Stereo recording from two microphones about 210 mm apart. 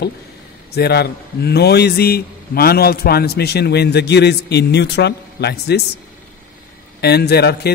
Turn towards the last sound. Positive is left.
turn(degrees=50)  # may be behind; listen again after turning